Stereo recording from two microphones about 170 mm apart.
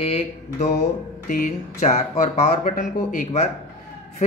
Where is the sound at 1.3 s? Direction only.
50° left (ahead or behind).